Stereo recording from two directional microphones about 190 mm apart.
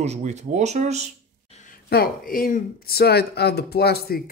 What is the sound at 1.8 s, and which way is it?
Speech, 55° left (ahead or behind).